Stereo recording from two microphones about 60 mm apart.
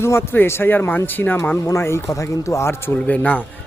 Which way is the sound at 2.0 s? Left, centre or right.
Left.